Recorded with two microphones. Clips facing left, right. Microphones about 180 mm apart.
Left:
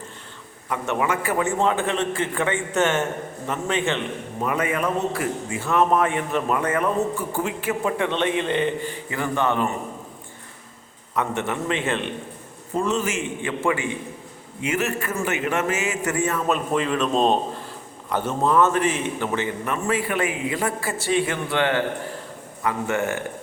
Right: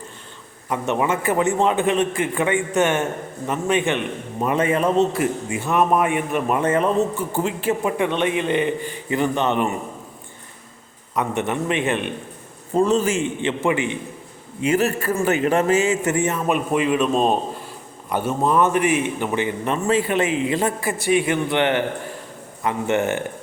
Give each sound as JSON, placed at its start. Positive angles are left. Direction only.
{"t": 0.7, "sound": "a man's voice", "side_deg": -20}
{"t": 6.6, "sound": "a man's voice", "side_deg": -25}
{"t": 7.9, "sound": "a man's voice", "side_deg": -15}
{"t": 11.1, "sound": "a man's voice", "side_deg": -15}
{"t": 12.7, "sound": "a man's voice", "side_deg": -35}
{"t": 14.6, "sound": "a man's voice", "side_deg": -35}
{"t": 19.6, "sound": "a man's voice", "side_deg": -25}